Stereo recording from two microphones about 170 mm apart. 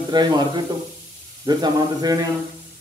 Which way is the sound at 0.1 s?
25° right (ahead or behind).